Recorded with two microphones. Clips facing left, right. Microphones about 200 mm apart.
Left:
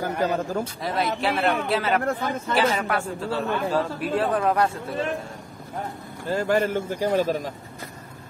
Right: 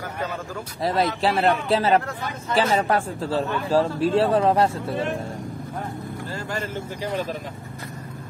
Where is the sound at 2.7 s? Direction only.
35° right (ahead or behind).